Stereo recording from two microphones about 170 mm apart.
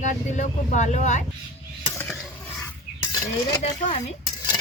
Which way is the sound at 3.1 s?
20° left (ahead or behind).